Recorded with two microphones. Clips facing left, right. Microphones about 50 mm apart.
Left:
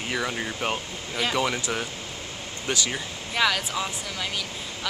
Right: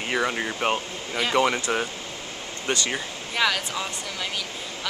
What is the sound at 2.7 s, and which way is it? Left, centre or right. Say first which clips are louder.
Speech: right 1 dB; right.